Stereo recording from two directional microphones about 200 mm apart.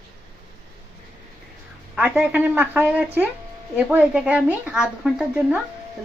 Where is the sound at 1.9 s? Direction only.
5° right (ahead or behind).